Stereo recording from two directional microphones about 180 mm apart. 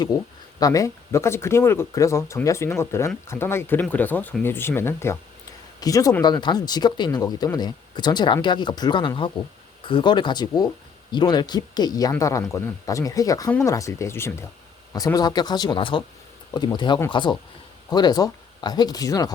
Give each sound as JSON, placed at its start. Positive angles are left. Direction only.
{"t": 0.6, "sound": "speech", "side_deg": 20}